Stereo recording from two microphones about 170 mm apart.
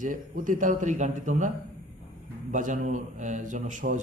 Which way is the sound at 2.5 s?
50° right (ahead or behind).